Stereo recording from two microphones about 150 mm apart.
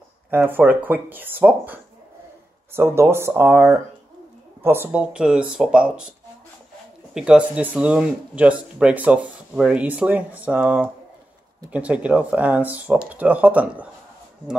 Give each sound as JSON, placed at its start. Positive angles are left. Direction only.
{"t": 0.3, "sound": "speech", "side_deg": -15}
{"t": 7.2, "sound": "speech", "side_deg": -5}